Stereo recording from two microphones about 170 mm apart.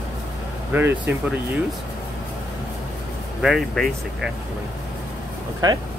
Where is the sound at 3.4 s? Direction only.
Centre (ahead or behind).